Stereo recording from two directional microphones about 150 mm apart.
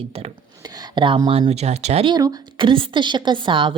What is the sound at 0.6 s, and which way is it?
Speech, 25° right (ahead or behind).